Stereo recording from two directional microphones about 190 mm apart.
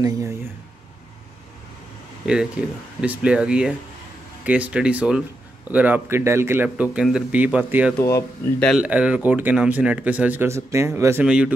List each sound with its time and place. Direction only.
0.0 s speech: 15° right (ahead or behind)
2.2 s speech: 5° right (ahead or behind)
8.0 s speech: 15° left (ahead or behind)
8.6 s speech: 5° right (ahead or behind)